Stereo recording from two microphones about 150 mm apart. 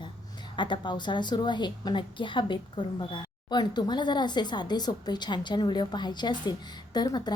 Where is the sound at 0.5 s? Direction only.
30° left (ahead or behind).